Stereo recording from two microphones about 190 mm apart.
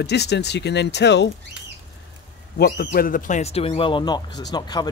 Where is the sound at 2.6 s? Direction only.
55° left (ahead or behind).